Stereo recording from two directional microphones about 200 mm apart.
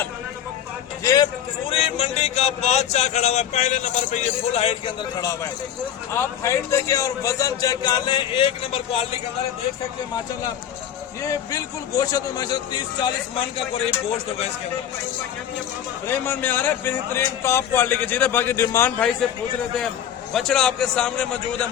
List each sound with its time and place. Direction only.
1.0 s a man's voice: 20° left (ahead or behind)
1.7 s speech: 30° left (ahead or behind)
6.1 s a man's voice: 15° left (ahead or behind); by 9.0 s 30° left (ahead or behind)
11.2 s a man's voice: 15° left (ahead or behind)
16.0 s a man's voice: 10° left (ahead or behind)
20.3 s a man's voice: centre (ahead or behind)